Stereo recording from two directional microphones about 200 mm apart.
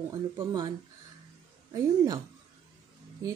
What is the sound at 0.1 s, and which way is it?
Speech, 20° right (ahead or behind).